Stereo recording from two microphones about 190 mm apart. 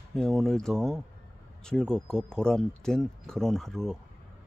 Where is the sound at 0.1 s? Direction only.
Centre (ahead or behind).